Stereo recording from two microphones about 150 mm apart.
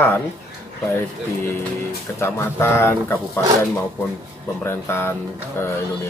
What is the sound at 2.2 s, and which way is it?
Speech, 15° left (ahead or behind).